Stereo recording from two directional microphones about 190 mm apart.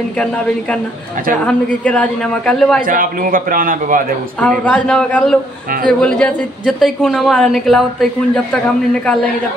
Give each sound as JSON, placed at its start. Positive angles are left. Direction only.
{"t": 1.4, "sound": "a woman's voice", "side_deg": 5}
{"t": 2.9, "sound": "a man's voice", "side_deg": -45}
{"t": 4.4, "sound": "a woman's voice", "side_deg": 5}